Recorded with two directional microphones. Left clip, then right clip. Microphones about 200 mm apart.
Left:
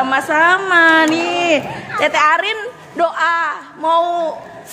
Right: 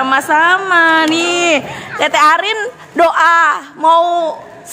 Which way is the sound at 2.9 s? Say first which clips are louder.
Right 6 dB; 35° right (ahead or behind).